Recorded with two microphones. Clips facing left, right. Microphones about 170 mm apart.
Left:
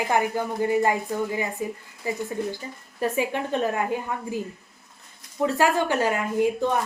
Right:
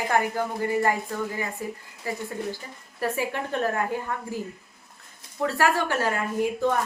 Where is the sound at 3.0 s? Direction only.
20° left (ahead or behind).